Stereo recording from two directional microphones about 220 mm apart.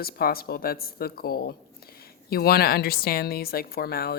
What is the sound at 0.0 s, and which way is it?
A woman's voice, 45° left (ahead or behind).